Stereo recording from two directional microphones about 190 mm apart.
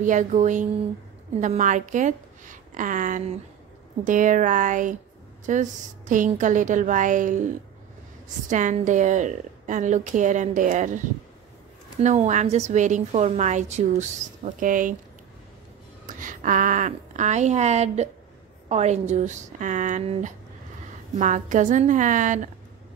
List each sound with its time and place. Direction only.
0.0 s a woman's voice: 40° right (ahead or behind)
8.5 s a woman's voice: 40° right (ahead or behind)
12.0 s a woman's voice: 40° right (ahead or behind)
16.1 s a woman's voice: 45° right (ahead or behind)